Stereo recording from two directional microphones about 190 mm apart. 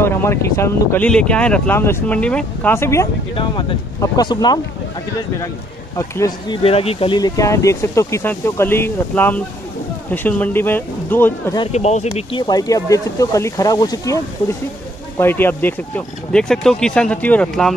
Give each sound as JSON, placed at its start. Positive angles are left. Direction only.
{"t": 0.0, "sound": "speech", "side_deg": 15}
{"t": 5.9, "sound": "speech", "side_deg": 15}
{"t": 6.6, "sound": "speech", "side_deg": 30}
{"t": 11.6, "sound": "speech", "side_deg": 35}
{"t": 12.2, "sound": "speech", "side_deg": 25}